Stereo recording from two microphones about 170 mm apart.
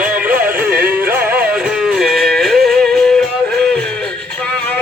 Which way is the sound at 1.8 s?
Centre (ahead or behind).